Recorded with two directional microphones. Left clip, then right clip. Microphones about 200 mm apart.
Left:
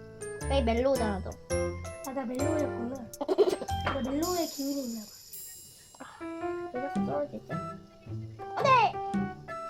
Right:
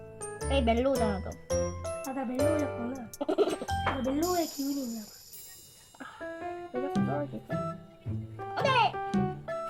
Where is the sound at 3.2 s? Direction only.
20° left (ahead or behind).